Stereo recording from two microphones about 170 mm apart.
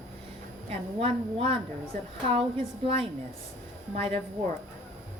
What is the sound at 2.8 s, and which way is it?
A woman's voice, 35° right (ahead or behind).